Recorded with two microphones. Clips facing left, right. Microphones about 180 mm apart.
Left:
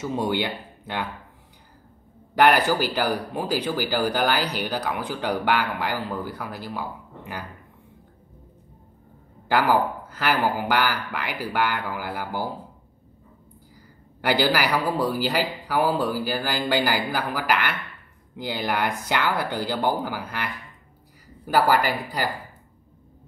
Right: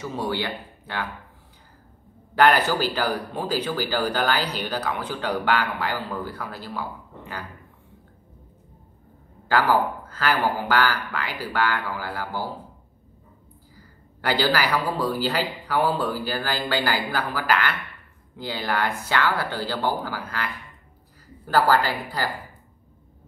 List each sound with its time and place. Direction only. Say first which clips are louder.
0.1 s speech: left 3 dB; 20° left (ahead or behind)
2.3 s speech: left 1 dB; 10° left (ahead or behind)
9.5 s speech: even; 15° left (ahead or behind)
14.2 s speech: left 1 dB; 10° left (ahead or behind)